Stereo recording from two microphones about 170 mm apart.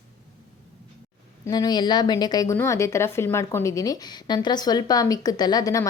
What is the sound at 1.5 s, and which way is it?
A woman's voice, 25° left (ahead or behind).